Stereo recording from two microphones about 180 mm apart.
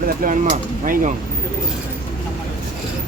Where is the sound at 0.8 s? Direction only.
50° right (ahead or behind).